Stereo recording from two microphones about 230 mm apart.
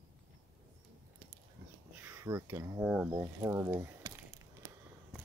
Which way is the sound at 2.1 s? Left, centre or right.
Centre.